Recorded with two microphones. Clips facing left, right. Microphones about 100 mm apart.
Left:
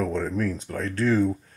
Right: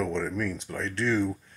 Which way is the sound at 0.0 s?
40° left (ahead or behind).